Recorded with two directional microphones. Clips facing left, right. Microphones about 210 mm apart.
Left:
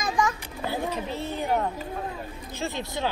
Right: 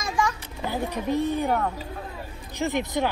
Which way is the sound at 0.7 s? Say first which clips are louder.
Right 3 dB; 15° right (ahead or behind).